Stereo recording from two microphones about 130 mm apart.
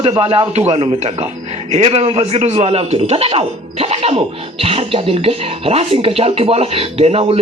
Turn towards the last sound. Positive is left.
turn(degrees=-50)  # may be behind; listen again after turning